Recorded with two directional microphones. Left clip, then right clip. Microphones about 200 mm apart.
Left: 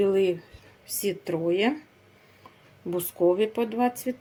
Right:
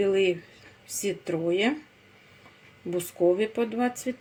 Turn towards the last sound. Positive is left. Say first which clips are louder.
# left 2 dB
turn(degrees=5)  # may be behind; listen again after turning